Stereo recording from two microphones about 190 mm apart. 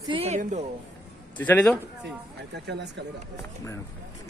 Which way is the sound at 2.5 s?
65° right (ahead or behind).